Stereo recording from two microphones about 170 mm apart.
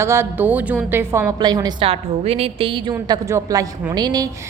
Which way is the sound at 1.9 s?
35° right (ahead or behind).